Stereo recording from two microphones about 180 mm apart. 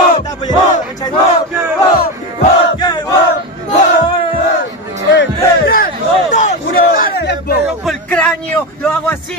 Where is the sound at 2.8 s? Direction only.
20° left (ahead or behind).